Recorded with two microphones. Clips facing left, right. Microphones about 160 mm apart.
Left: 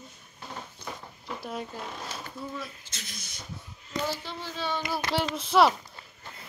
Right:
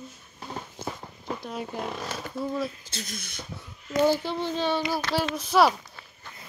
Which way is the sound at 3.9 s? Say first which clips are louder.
Right 10 dB; 50° right (ahead or behind).